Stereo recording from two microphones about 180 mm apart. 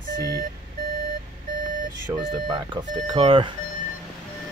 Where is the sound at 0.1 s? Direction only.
60° right (ahead or behind).